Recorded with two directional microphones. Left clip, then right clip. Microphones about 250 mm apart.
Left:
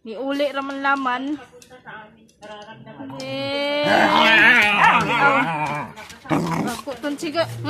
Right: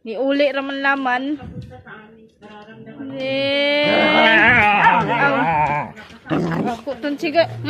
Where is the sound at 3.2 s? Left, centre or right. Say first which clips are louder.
Right 6 dB; centre.